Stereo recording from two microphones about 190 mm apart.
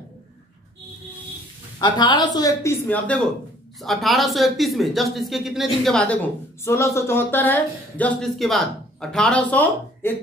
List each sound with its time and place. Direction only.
1.8 s speech: 25° left (ahead or behind); by 10.1 s 10° left (ahead or behind)